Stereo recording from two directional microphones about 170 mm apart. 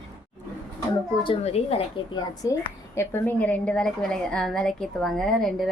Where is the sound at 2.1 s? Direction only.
20° left (ahead or behind).